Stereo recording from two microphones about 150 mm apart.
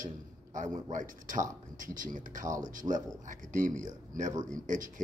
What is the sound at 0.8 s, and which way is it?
Speech, 60° right (ahead or behind).